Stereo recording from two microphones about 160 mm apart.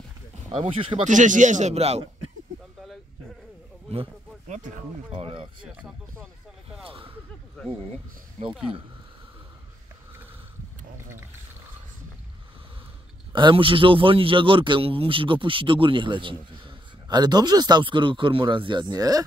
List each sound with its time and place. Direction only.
0.5 s speech: 35° right (ahead or behind)
1.0 s speech: 50° right (ahead or behind)
3.9 s a sound: 35° right (ahead or behind)
5.1 s speech: 30° right (ahead or behind)
5.7 s speech: 5° right (ahead or behind)
6.8 s a sound: 35° right (ahead or behind)
8.4 s speech: 45° right (ahead or behind)
13.3 s speech: 30° right (ahead or behind)